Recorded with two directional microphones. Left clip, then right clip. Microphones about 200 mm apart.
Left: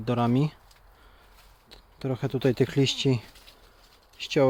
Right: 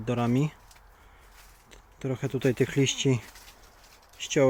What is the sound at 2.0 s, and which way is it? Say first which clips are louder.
Speech: left 2 dB; 10° left (ahead or behind).